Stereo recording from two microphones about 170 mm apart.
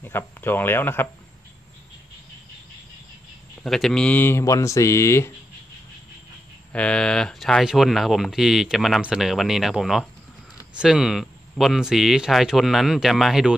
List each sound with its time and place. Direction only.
0.0 s speech: 15° left (ahead or behind)
3.6 s speech: centre (ahead or behind)
6.7 s speech: 5° left (ahead or behind)